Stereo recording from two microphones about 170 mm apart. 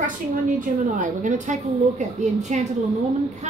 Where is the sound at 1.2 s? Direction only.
45° right (ahead or behind).